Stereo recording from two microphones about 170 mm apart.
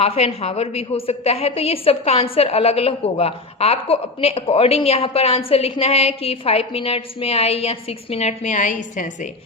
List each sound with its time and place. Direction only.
0.0 s a woman's voice: 35° left (ahead or behind)